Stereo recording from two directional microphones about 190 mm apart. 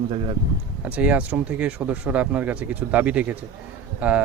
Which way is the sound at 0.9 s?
10° right (ahead or behind).